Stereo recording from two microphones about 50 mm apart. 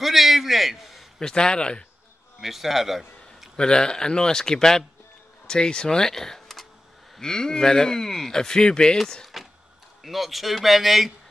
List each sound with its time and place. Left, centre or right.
0.0 s a sound: centre
1.2 s speech: centre
2.4 s a man's voice: centre
3.5 s speech: centre
9.2 s a sound: centre
10.0 s speech: centre